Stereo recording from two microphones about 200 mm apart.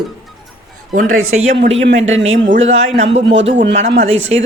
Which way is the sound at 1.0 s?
90° right.